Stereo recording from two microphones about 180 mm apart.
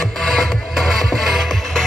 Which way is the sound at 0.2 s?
Centre (ahead or behind).